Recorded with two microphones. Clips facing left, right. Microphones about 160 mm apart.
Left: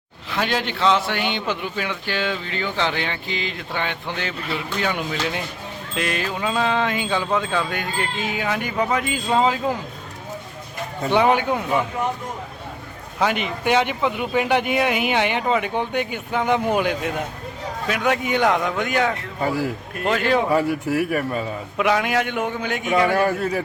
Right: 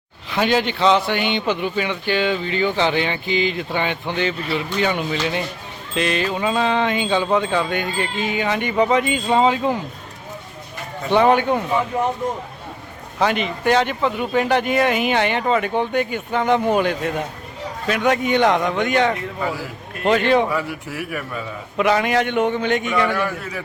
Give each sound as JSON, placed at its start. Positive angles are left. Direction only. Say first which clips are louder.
{"t": 0.3, "sound": "a man's voice", "louder": "right 5 dB", "side_deg": 0}
{"t": 11.1, "sound": "speech", "louder": "right 3 dB", "side_deg": 10}
{"t": 13.1, "sound": "a man's voice", "louder": "right 2 dB", "side_deg": 5}
{"t": 20.5, "sound": "a man's voice", "louder": "left 5 dB", "side_deg": 40}
{"t": 21.8, "sound": "a man's voice", "louder": "right 3 dB", "side_deg": 0}
{"t": 23.1, "sound": "a man's voice", "louder": "left 5 dB", "side_deg": 40}